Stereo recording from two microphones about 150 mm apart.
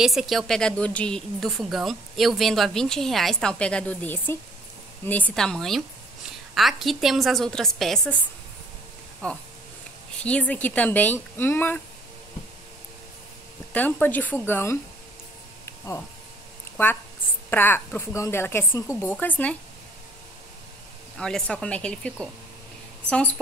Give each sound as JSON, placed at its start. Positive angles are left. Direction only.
{"t": 0.0, "sound": "a woman's voice", "side_deg": 0}
{"t": 9.2, "sound": "speech", "side_deg": 5}
{"t": 13.7, "sound": "speech", "side_deg": 10}
{"t": 15.6, "sound": "a sound", "side_deg": 20}
{"t": 16.7, "sound": "speech", "side_deg": 15}
{"t": 21.2, "sound": "speech", "side_deg": 5}